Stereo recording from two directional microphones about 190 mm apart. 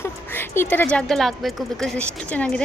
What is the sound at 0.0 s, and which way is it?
A woman's voice, 10° left (ahead or behind).